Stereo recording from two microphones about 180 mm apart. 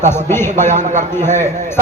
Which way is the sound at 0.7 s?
45° right (ahead or behind).